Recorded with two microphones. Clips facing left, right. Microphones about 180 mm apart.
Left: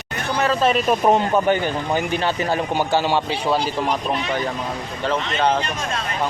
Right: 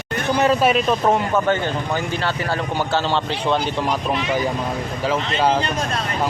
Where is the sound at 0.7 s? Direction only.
10° left (ahead or behind).